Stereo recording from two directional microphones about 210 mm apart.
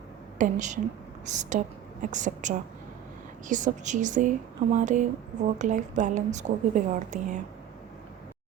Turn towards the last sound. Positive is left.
turn(degrees=-35)  # may be behind; listen again after turning